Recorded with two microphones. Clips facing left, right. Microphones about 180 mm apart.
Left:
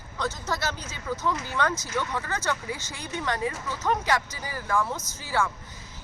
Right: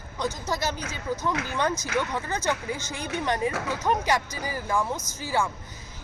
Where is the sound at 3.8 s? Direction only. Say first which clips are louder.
Even; 15° right (ahead or behind).